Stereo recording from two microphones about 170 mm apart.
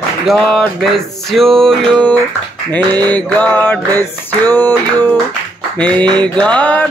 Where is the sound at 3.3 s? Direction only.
10° left (ahead or behind).